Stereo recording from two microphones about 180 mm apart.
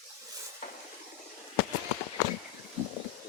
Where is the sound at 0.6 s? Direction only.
50° left (ahead or behind).